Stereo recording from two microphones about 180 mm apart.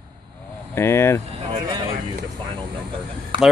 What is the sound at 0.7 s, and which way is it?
Speech, 15° left (ahead or behind).